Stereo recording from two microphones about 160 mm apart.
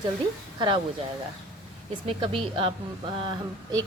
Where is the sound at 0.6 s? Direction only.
30° right (ahead or behind).